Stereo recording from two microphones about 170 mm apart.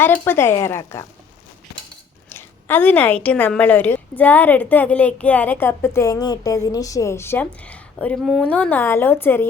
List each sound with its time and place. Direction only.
0.0 s a woman's voice: 10° left (ahead or behind)
2.3 s a woman's voice: 10° left (ahead or behind)